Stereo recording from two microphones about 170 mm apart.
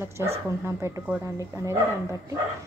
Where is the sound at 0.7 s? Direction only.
15° right (ahead or behind).